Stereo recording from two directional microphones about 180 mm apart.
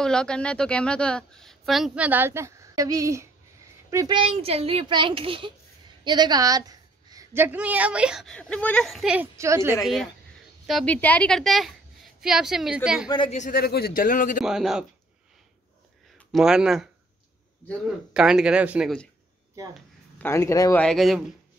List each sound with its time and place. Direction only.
0.0 s a woman's voice: 5° left (ahead or behind); by 4.2 s 20° right (ahead or behind)
4.2 s a child's voice: 35° right (ahead or behind); by 9.8 s 15° right (ahead or behind)
10.7 s a woman's voice: centre (ahead or behind)
13.5 s a man's voice: 60° left (ahead or behind)
14.4 s a woman's voice: centre (ahead or behind)
16.2 s a woman's voice: centre (ahead or behind)
20.2 s speech: 15° left (ahead or behind)
20.8 s a woman's voice: centre (ahead or behind)